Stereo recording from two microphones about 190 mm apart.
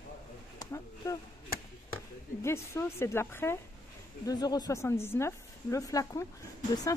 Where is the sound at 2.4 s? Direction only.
15° left (ahead or behind).